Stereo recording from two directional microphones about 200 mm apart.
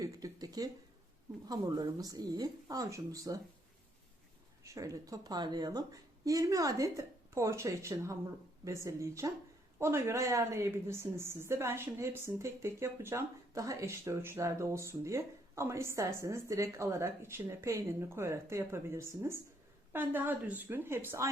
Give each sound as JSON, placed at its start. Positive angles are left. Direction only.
{"t": 0.0, "sound": "a sound", "side_deg": -20}
{"t": 1.5, "sound": "a woman's voice", "side_deg": -20}
{"t": 4.6, "sound": "a woman's voice", "side_deg": -15}